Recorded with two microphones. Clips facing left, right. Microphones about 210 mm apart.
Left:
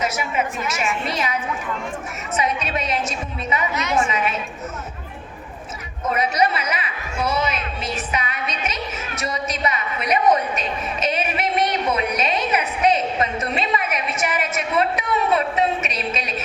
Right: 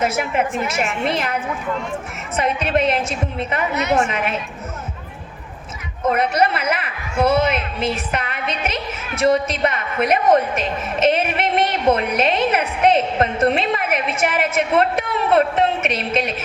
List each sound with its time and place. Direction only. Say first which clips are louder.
0.0 s a woman's voice: right 4 dB; 55° right (ahead or behind)
6.1 s a woman's voice: right 3 dB; 55° right (ahead or behind)